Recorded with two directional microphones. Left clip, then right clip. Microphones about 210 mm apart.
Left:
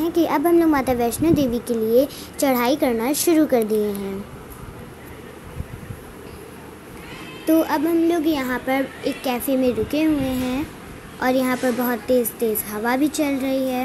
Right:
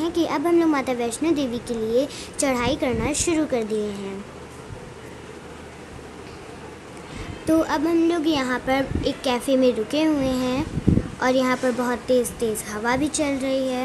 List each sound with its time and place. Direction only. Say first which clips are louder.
0.0 s a woman's voice: left 3 dB; 10° left (ahead or behind)
7.4 s a woman's voice: left 2 dB; 10° left (ahead or behind)